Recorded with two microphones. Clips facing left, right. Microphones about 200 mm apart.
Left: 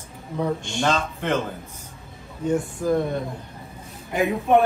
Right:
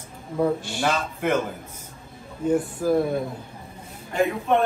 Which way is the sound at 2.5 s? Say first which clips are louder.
Right 1 dB; 5° right (ahead or behind).